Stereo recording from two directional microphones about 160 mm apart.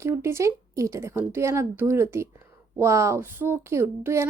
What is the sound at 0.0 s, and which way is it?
A woman's voice, 15° right (ahead or behind).